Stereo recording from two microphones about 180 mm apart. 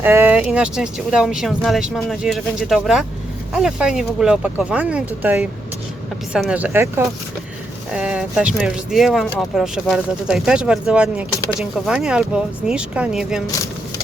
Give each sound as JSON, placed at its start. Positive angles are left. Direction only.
{"t": 0.0, "sound": "speech", "side_deg": -10}